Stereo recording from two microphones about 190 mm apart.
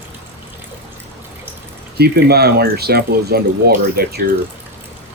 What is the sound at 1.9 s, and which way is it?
Speech, 55° right (ahead or behind).